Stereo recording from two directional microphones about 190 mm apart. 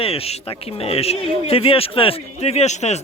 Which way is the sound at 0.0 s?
30° left (ahead or behind).